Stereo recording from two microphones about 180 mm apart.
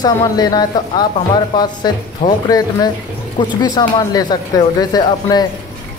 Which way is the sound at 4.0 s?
20° left (ahead or behind).